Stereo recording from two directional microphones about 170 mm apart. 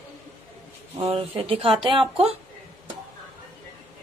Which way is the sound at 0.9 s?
35° right (ahead or behind).